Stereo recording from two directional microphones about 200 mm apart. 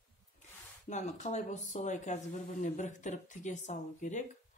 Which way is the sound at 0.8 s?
35° left (ahead or behind).